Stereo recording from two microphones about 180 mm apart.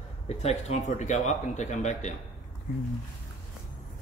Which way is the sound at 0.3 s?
35° left (ahead or behind).